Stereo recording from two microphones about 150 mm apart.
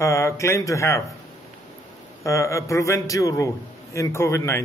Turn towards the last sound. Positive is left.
turn(degrees=20)  # may be behind; listen again after turning